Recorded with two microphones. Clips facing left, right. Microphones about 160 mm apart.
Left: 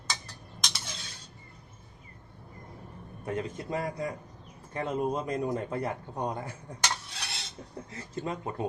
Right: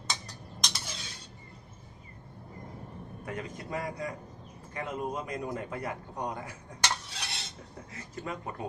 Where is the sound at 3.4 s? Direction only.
25° left (ahead or behind).